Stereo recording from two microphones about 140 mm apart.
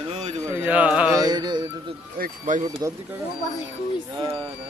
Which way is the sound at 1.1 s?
30° right (ahead or behind).